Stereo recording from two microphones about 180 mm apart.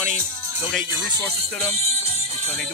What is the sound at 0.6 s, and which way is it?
Speech, centre (ahead or behind).